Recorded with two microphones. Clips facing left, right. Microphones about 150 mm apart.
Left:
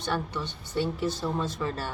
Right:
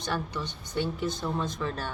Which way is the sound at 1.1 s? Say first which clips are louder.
Left 1 dB; 20° right (ahead or behind).